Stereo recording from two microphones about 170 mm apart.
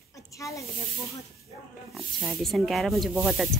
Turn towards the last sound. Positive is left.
turn(degrees=-5)  # may be behind; listen again after turning